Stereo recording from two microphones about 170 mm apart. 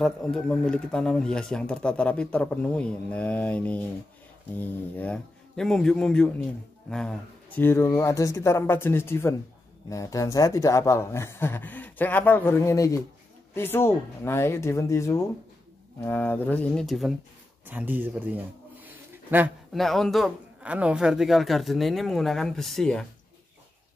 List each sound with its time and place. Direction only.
0.0 s speech: centre (ahead or behind)
17.6 s a man's voice: 10° right (ahead or behind)
19.8 s speech: centre (ahead or behind)